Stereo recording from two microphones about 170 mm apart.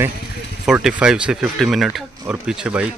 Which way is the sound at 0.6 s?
5° right (ahead or behind).